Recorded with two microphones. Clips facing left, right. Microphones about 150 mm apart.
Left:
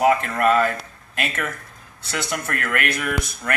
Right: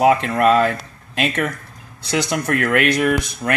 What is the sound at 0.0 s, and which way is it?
Speech, 20° right (ahead or behind).